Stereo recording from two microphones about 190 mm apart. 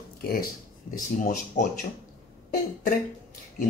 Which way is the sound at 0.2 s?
55° left (ahead or behind).